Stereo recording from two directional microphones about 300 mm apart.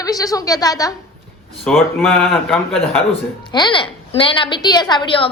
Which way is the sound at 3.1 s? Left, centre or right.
Centre.